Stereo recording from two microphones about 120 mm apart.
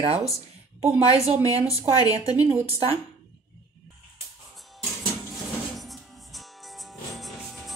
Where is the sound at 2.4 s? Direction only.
15° right (ahead or behind).